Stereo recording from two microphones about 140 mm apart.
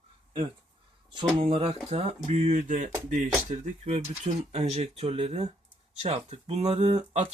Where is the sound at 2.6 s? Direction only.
65° right (ahead or behind).